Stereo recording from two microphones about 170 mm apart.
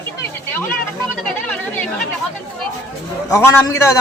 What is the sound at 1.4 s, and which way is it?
Speech, 10° left (ahead or behind).